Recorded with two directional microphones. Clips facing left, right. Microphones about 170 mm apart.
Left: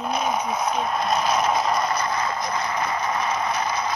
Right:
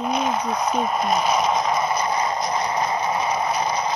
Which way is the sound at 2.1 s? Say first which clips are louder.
Right 3 dB; 20° right (ahead or behind).